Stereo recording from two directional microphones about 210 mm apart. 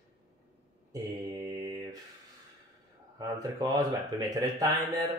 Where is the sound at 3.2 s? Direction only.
15° right (ahead or behind).